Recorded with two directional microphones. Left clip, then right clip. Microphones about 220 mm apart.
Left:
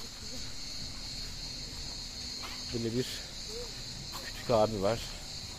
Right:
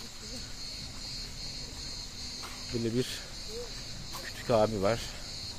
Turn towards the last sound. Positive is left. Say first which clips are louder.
# right 1 dB
turn(degrees=-15)  # may be behind; listen again after turning